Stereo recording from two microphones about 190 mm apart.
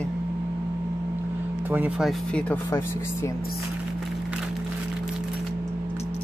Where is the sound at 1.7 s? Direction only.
10° right (ahead or behind).